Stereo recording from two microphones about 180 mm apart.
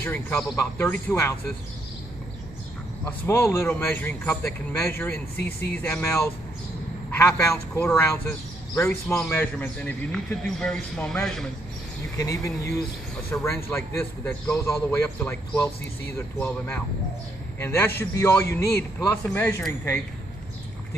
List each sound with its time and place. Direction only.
0.0 s a man's voice: 10° left (ahead or behind)
3.1 s a man's voice: 15° left (ahead or behind)
12.2 s a man's voice: 15° left (ahead or behind)